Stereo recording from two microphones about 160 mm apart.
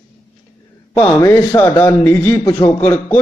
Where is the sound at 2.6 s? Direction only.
15° left (ahead or behind).